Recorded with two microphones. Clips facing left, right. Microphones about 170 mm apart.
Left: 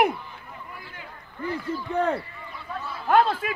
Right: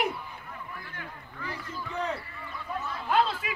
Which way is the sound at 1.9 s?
55° left (ahead or behind).